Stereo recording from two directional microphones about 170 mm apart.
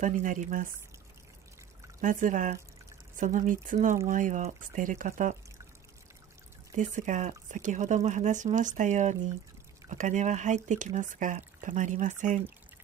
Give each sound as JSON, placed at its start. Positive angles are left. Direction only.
{"t": 0.0, "sound": "speech", "side_deg": -50}
{"t": 2.0, "sound": "speech", "side_deg": -50}
{"t": 6.7, "sound": "speech", "side_deg": -45}